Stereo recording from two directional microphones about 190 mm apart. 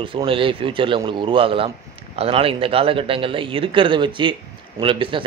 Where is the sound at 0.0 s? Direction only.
25° right (ahead or behind).